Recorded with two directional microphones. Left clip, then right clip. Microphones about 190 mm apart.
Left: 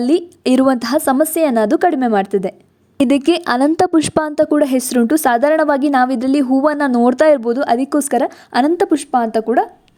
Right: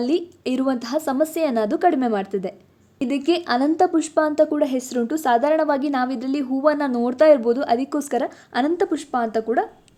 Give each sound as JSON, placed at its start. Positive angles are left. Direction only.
{"t": 0.0, "sound": "a woman's voice", "side_deg": 45}
{"t": 3.0, "sound": "a woman's voice", "side_deg": 50}